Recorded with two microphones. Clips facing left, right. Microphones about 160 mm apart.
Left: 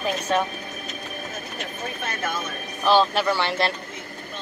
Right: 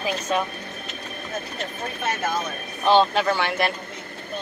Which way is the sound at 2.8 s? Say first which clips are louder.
Right 1 dB; 20° right (ahead or behind).